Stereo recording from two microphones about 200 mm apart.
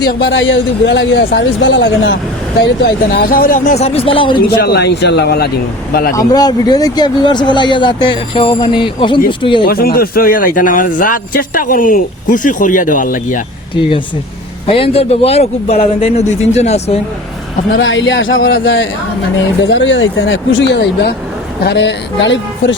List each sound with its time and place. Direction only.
0.0 s speech: 55° left (ahead or behind)
2.6 s a man's voice: 50° left (ahead or behind); by 4.4 s 25° left (ahead or behind)
4.4 s a man's voice: 55° left (ahead or behind)
6.1 s speech: 20° left (ahead or behind)
9.6 s a man's voice: 50° left (ahead or behind)
14.7 s a man's voice: 30° left (ahead or behind)
17.7 s speech: 65° left (ahead or behind)
19.6 s speech: 65° left (ahead or behind)